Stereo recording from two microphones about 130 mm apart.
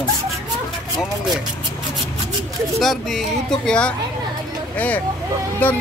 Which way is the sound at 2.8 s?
Centre (ahead or behind).